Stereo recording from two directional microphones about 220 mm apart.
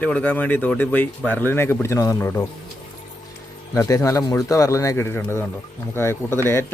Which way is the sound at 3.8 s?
15° left (ahead or behind).